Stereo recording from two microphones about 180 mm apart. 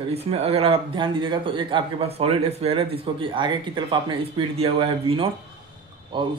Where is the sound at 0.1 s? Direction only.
35° right (ahead or behind).